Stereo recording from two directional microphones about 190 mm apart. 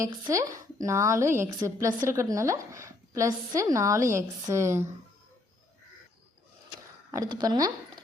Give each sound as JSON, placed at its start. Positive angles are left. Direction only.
{"t": 0.0, "sound": "a woman's voice", "side_deg": -15}
{"t": 7.1, "sound": "speech", "side_deg": -20}